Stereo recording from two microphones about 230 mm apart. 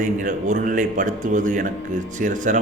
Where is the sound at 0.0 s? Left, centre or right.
Right.